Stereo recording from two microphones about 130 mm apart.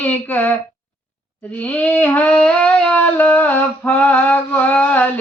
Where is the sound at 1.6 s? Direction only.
10° left (ahead or behind).